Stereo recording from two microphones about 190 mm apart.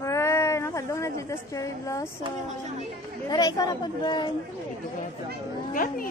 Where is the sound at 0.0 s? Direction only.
15° left (ahead or behind).